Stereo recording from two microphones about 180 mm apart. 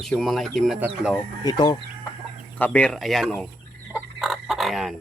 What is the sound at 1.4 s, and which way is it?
Speech, 25° left (ahead or behind).